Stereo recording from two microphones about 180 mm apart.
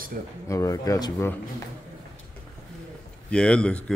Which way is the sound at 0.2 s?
50° right (ahead or behind).